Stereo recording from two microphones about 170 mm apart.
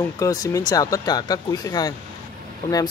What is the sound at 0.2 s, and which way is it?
Speech, 20° left (ahead or behind).